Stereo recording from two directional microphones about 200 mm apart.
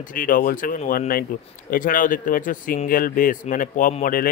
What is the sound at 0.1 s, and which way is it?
Speech, 45° left (ahead or behind).